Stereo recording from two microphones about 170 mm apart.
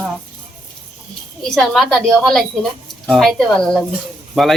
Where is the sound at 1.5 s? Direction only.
Centre (ahead or behind).